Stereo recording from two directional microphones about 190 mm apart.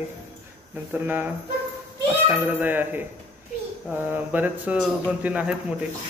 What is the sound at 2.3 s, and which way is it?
Speech, 10° right (ahead or behind).